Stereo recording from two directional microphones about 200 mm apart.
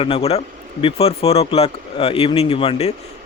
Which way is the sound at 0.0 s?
30° left (ahead or behind).